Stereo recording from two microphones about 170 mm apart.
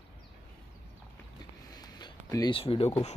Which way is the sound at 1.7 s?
25° left (ahead or behind).